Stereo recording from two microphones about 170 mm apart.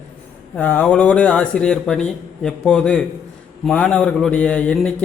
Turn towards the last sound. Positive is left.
turn(degrees=5)  # may be behind; listen again after turning